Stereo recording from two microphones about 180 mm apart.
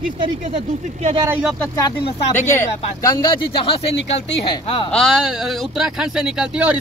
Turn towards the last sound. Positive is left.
turn(degrees=-5)  # may be behind; listen again after turning